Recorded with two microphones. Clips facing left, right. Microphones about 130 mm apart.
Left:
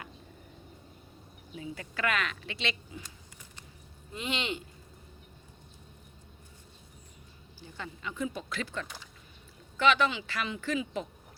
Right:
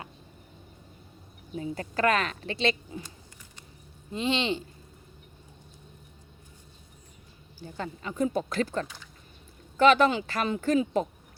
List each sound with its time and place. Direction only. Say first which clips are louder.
1.5 s a woman's voice: right 8 dB; 40° right (ahead or behind)
4.1 s speech: right 7 dB; 30° right (ahead or behind)
7.6 s speech: right 5 dB; 40° right (ahead or behind)